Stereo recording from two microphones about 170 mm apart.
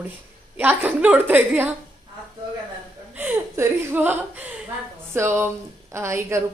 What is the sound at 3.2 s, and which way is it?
A woman's voice, 15° right (ahead or behind).